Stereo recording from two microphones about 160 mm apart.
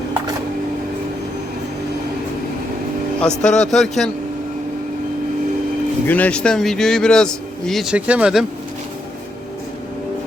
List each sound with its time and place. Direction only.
3.2 s a man's voice: 5° left (ahead or behind)
6.1 s a man's voice: 10° left (ahead or behind)